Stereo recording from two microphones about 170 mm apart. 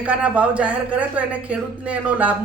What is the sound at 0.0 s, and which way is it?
Speech, 10° right (ahead or behind).